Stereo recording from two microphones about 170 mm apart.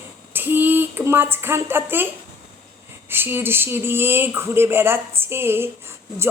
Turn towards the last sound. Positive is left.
turn(degrees=-15)  # may be behind; listen again after turning